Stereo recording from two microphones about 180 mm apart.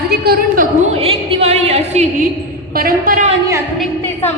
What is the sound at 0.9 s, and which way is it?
A woman's voice, 35° right (ahead or behind).